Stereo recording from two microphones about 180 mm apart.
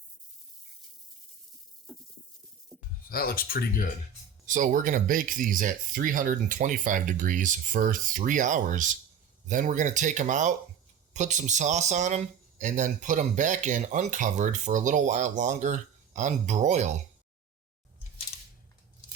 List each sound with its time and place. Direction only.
2.7 s music: 5° left (ahead or behind)
3.1 s speech: 55° left (ahead or behind)
4.4 s speech: 45° right (ahead or behind)